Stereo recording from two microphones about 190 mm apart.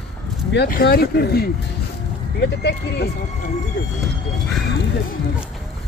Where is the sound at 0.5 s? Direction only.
60° left (ahead or behind).